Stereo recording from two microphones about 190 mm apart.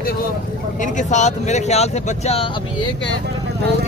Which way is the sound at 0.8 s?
40° left (ahead or behind).